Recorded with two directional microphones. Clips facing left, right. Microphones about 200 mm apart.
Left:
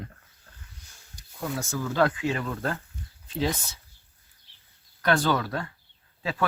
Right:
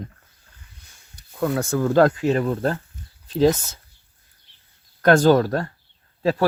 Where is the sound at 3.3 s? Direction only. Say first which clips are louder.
Right 11 dB; 45° right (ahead or behind).